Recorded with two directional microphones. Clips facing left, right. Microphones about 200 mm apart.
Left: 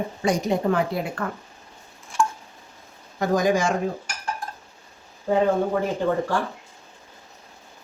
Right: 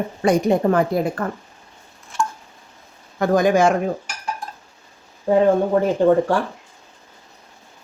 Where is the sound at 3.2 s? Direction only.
60° right (ahead or behind).